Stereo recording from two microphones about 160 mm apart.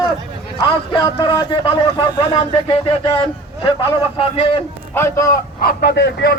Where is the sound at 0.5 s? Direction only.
30° left (ahead or behind).